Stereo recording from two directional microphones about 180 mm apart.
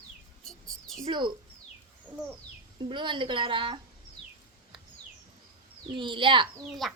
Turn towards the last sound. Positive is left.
turn(degrees=0)  # may be behind; listen again after turning